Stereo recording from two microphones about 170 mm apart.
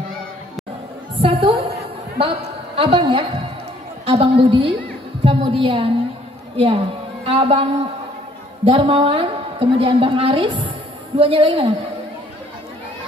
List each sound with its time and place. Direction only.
1.2 s a woman's voice: 35° right (ahead or behind)